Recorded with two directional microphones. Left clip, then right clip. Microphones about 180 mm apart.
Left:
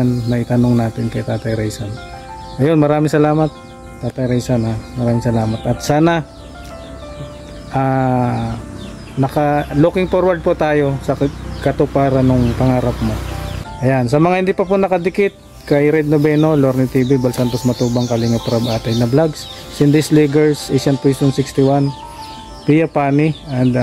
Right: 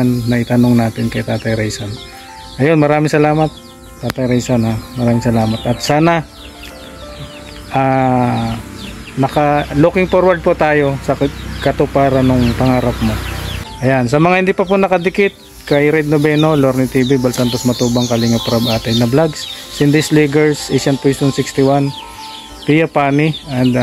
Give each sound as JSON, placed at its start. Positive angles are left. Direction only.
{"t": 0.0, "sound": "speech", "side_deg": -10}
{"t": 4.2, "sound": "speech", "side_deg": -15}
{"t": 7.7, "sound": "speech", "side_deg": -10}